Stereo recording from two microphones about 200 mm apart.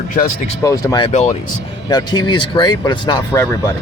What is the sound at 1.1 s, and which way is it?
Speech, 35° left (ahead or behind).